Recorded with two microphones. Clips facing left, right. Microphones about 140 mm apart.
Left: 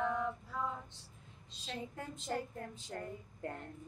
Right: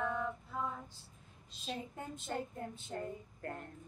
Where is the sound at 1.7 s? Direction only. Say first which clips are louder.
Even; 20° right (ahead or behind).